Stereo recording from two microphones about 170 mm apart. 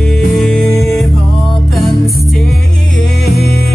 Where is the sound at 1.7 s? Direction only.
Centre (ahead or behind).